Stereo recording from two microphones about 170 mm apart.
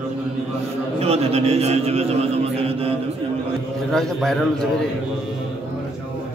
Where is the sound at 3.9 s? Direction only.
Centre (ahead or behind).